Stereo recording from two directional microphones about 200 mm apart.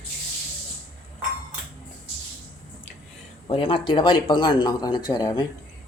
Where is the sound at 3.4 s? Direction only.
25° left (ahead or behind).